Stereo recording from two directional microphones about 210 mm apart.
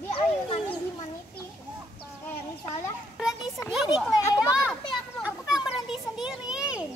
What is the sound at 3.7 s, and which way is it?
Speech, centre (ahead or behind).